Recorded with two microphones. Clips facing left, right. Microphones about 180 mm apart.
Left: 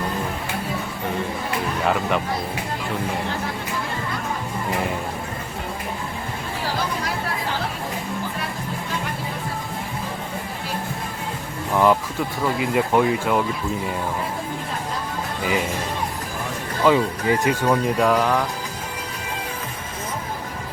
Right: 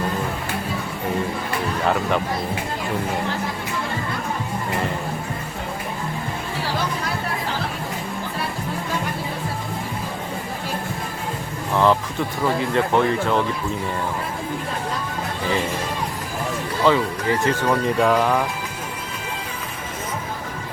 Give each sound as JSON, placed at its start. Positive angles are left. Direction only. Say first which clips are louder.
{"t": 1.8, "sound": "speech", "louder": "right 1 dB", "side_deg": 0}
{"t": 11.7, "sound": "speech", "louder": "even", "side_deg": 10}
{"t": 16.8, "sound": "speech", "louder": "left 1 dB", "side_deg": 15}
{"t": 18.0, "sound": "speech", "louder": "right 2 dB", "side_deg": 0}